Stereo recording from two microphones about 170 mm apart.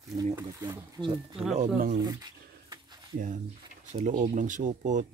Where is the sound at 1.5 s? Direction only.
45° right (ahead or behind).